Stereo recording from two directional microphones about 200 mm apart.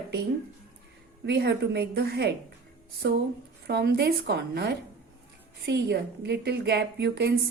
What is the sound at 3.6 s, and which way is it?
A woman's voice, 55° right (ahead or behind).